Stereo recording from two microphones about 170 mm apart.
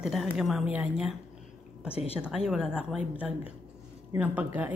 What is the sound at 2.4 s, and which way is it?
A woman's voice, centre (ahead or behind).